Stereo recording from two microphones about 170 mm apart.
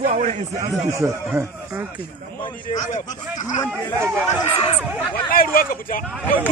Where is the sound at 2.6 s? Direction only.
45° left (ahead or behind).